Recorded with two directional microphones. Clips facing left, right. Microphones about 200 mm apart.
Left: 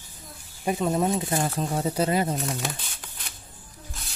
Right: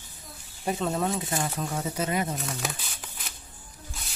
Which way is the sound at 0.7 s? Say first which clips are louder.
Left 3 dB; 10° left (ahead or behind).